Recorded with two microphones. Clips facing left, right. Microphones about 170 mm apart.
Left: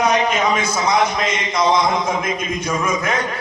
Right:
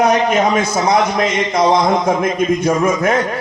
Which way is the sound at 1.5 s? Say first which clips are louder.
Right 3 dB; 60° right (ahead or behind).